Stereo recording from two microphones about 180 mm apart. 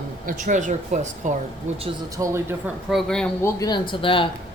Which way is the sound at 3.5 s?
20° left (ahead or behind).